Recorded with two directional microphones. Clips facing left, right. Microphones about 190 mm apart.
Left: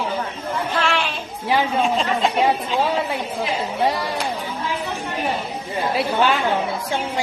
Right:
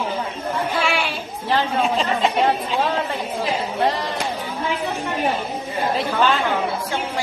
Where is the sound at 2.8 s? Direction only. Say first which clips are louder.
Left 1 dB; 10° left (ahead or behind).